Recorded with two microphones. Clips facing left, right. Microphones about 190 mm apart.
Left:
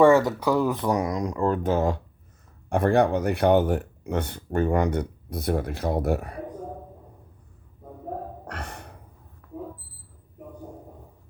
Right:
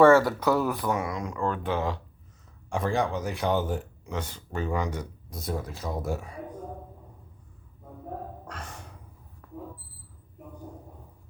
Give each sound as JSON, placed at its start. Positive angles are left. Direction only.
{"t": 0.0, "sound": "speech", "side_deg": 20}
{"t": 0.9, "sound": "speech", "side_deg": 40}
{"t": 2.6, "sound": "speech", "side_deg": 60}
{"t": 8.4, "sound": "gasp", "side_deg": 65}